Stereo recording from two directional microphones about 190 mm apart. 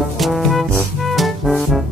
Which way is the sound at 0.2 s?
Centre (ahead or behind).